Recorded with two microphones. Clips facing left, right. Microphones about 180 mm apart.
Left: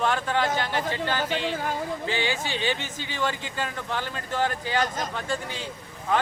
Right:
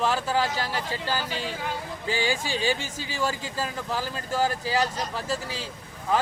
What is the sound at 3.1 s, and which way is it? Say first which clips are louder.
Speech: even; 10° right (ahead or behind).